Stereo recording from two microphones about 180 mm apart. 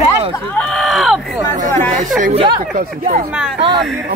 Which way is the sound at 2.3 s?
30° right (ahead or behind).